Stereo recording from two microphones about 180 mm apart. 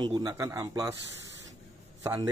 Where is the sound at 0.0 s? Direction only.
20° right (ahead or behind).